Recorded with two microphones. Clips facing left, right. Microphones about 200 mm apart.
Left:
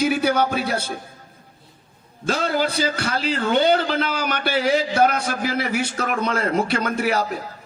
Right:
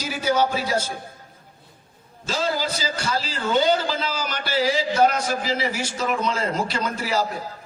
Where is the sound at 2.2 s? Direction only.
60° left (ahead or behind).